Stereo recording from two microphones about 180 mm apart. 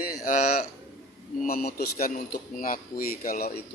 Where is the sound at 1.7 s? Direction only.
55° left (ahead or behind).